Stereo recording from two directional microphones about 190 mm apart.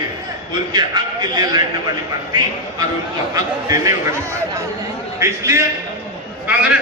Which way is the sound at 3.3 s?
20° right (ahead or behind).